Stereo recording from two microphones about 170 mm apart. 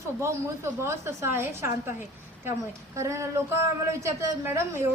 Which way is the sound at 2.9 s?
15° right (ahead or behind).